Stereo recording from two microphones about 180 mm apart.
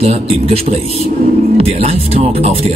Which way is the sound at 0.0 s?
35° right (ahead or behind).